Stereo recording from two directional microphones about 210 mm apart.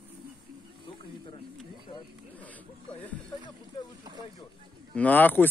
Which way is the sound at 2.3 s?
5° left (ahead or behind).